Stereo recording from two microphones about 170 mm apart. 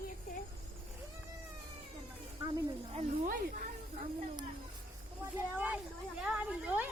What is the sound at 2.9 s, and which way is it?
Speech, 45° right (ahead or behind).